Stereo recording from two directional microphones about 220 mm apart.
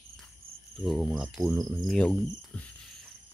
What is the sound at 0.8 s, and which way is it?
Speech, 5° right (ahead or behind).